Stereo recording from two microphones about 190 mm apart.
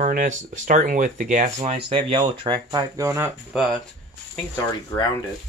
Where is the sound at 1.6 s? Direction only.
30° right (ahead or behind); by 3.3 s 15° right (ahead or behind).